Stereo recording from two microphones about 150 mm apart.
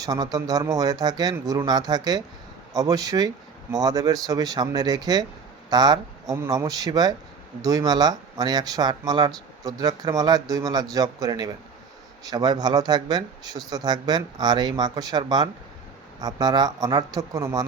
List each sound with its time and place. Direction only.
0.0 s speech: 25° right (ahead or behind)
6.3 s speech: 15° right (ahead or behind)